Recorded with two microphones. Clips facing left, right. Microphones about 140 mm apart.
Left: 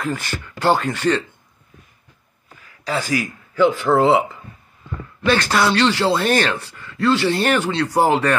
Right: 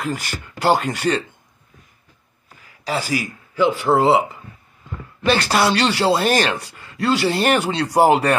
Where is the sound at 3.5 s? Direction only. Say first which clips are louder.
Left 1 dB; 10° right (ahead or behind).